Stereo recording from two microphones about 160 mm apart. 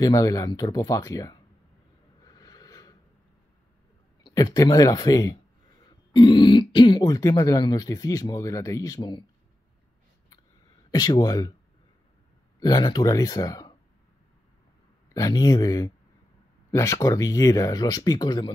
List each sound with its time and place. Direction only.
0.0 s speech: 20° left (ahead or behind)
2.2 s a sound: 25° left (ahead or behind)
4.2 s speech: 25° left (ahead or behind)
10.9 s speech: 25° left (ahead or behind)
12.5 s speech: 25° left (ahead or behind)
15.1 s speech: 20° left (ahead or behind)